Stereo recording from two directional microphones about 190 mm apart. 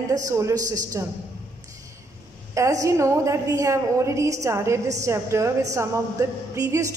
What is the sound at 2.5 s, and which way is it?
A woman's voice, 15° right (ahead or behind).